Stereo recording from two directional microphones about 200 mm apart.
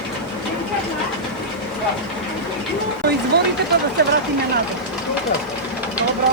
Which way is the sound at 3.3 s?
55° right (ahead or behind).